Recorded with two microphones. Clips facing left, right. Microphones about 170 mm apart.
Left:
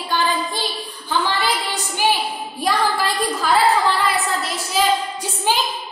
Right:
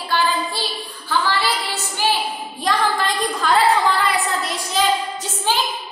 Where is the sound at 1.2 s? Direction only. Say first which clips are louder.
Even; 15° left (ahead or behind); by 4.8 s centre (ahead or behind).